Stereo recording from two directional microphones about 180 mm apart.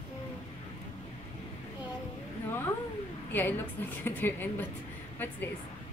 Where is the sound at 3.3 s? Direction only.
10° left (ahead or behind).